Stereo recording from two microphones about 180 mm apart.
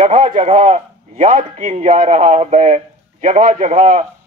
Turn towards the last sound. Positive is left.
turn(degrees=-40)  # may be behind; listen again after turning